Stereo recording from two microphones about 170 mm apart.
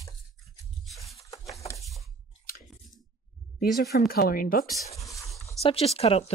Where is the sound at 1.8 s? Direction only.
Centre (ahead or behind).